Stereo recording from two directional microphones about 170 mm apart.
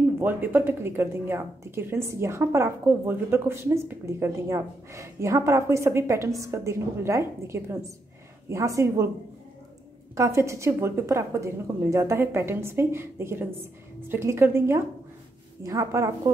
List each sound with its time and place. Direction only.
0.2 s a woman's voice: 10° right (ahead or behind)
10.1 s a woman's voice: 15° right (ahead or behind)